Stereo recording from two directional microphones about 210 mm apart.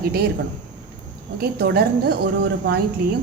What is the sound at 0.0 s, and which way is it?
Speech, 50° right (ahead or behind).